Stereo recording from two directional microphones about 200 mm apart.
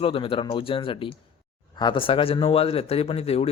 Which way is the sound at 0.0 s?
25° left (ahead or behind).